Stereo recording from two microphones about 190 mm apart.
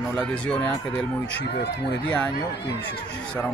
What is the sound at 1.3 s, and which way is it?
Speech, 60° left (ahead or behind).